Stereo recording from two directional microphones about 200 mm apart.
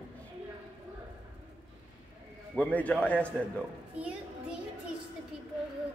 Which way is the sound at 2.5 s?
5° left (ahead or behind).